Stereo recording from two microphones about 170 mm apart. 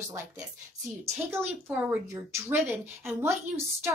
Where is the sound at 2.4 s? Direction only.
15° right (ahead or behind).